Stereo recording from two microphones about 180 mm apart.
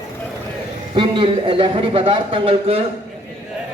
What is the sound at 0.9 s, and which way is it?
A man's voice, 30° right (ahead or behind).